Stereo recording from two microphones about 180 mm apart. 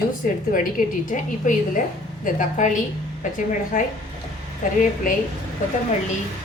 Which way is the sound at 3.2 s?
50° left (ahead or behind).